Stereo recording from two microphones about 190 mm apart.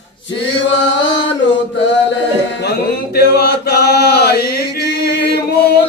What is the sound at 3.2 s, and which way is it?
Chant, 55° left (ahead or behind).